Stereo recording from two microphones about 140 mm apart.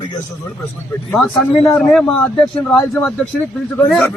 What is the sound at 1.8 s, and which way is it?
A man's voice, 5° left (ahead or behind).